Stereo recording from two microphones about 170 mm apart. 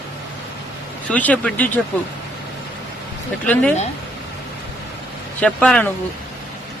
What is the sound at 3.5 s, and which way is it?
Speech, 5° left (ahead or behind).